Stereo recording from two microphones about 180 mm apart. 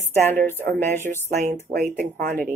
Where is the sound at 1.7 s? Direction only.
50° right (ahead or behind).